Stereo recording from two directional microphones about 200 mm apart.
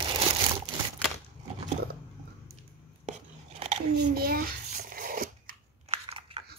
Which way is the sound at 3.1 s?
35° right (ahead or behind).